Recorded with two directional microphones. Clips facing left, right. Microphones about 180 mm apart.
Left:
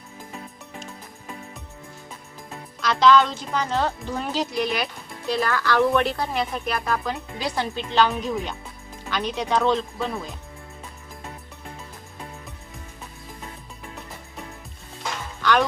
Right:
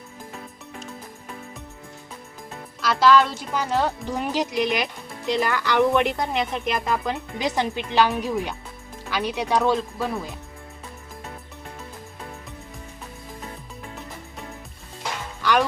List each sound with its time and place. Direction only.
2.8 s speech: 5° right (ahead or behind)
15.4 s music: 10° right (ahead or behind)